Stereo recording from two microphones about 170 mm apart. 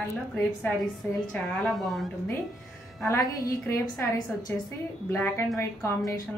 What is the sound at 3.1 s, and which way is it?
A woman's voice, 20° left (ahead or behind).